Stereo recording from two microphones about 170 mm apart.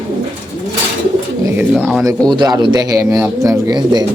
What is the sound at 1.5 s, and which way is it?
Speech, 5° right (ahead or behind).